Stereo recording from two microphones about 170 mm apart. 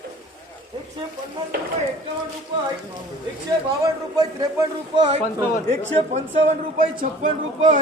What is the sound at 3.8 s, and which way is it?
Speech, 20° right (ahead or behind).